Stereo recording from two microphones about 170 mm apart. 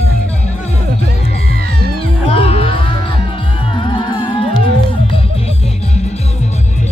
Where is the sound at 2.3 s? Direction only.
35° left (ahead or behind).